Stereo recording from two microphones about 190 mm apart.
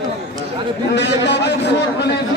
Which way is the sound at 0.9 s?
65° left (ahead or behind).